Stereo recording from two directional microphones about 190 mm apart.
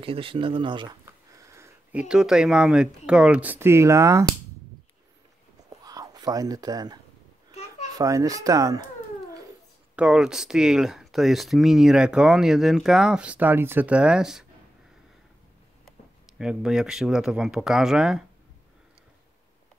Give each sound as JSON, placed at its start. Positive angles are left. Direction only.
{"t": 0.0, "sound": "speech", "side_deg": -30}
{"t": 5.7, "sound": "a sound", "side_deg": -20}
{"t": 8.0, "sound": "speech", "side_deg": -15}
{"t": 9.9, "sound": "speech", "side_deg": -5}
{"t": 16.3, "sound": "speech", "side_deg": -5}